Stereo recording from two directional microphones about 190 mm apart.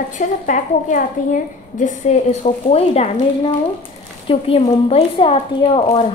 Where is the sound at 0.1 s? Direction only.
40° left (ahead or behind).